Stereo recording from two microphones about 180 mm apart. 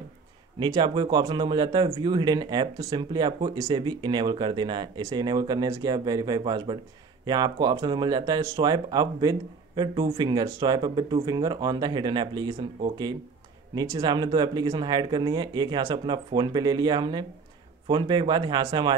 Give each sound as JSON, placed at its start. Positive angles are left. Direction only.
{"t": 0.6, "sound": "speech", "side_deg": -25}